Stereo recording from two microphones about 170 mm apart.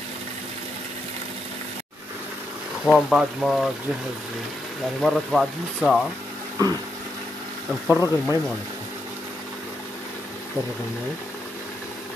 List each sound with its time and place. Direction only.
2.8 s speech: centre (ahead or behind)
5.0 s speech: centre (ahead or behind)
7.9 s speech: 20° left (ahead or behind)